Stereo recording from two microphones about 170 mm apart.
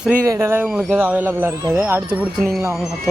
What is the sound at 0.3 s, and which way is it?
Speech, 15° right (ahead or behind).